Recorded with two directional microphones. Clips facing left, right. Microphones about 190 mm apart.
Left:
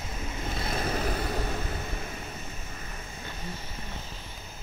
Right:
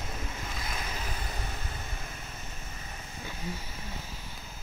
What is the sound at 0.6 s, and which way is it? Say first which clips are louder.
Vehicle: left 10 dB; 35° left (ahead or behind).